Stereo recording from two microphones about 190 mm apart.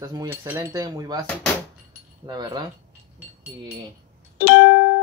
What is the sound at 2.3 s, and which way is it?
Speech, 20° right (ahead or behind).